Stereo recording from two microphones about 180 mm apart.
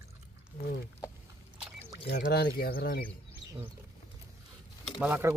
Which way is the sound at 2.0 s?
65° left (ahead or behind).